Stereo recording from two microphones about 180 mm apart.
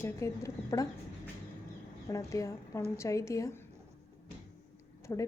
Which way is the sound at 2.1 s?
20° left (ahead or behind).